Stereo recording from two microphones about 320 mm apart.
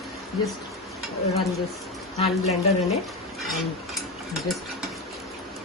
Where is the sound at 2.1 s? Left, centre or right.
Centre.